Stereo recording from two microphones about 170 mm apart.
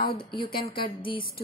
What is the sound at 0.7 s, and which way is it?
Speech, 30° left (ahead or behind).